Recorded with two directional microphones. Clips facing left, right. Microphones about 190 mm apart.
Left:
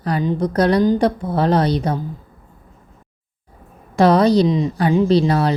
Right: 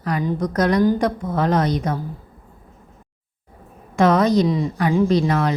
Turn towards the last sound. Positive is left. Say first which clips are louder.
# left 3 dB
turn(degrees=30)  # may be behind; listen again after turning